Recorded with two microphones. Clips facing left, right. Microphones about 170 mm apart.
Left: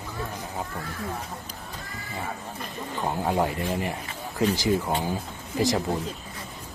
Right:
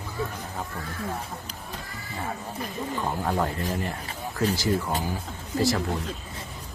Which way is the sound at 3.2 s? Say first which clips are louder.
Left 4 dB; 15° left (ahead or behind).